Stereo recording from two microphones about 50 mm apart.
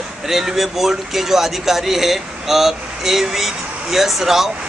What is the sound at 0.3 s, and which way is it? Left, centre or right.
Speech, centre.